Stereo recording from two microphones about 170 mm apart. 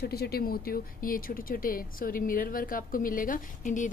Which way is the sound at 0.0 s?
65° left (ahead or behind).